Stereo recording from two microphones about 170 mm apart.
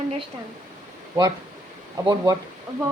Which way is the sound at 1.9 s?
20° right (ahead or behind).